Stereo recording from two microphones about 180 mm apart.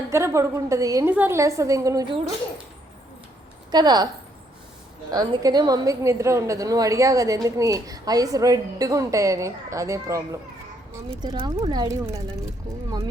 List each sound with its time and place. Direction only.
0.1 s a woman's voice: 15° right (ahead or behind)
3.7 s a woman's voice: 25° right (ahead or behind)
5.2 s a woman's voice: 20° right (ahead or behind)